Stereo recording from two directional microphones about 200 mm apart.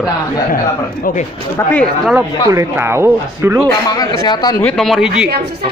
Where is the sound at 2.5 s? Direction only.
15° right (ahead or behind).